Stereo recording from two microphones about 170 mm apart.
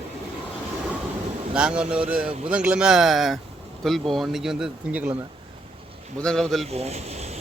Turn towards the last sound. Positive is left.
turn(degrees=-40)  # may be behind; listen again after turning